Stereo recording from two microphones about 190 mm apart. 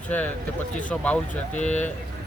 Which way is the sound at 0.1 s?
10° left (ahead or behind).